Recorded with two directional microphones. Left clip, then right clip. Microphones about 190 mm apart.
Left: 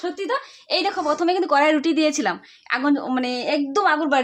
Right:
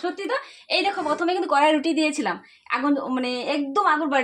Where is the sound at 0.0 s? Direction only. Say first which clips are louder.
Left 2 dB; 25° left (ahead or behind).